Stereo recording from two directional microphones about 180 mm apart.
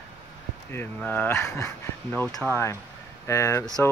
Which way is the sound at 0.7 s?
10° left (ahead or behind).